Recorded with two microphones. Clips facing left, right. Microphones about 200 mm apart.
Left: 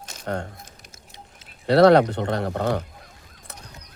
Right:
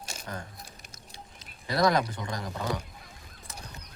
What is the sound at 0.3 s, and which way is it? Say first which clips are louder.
Speech: left 12 dB; 65° left (ahead or behind).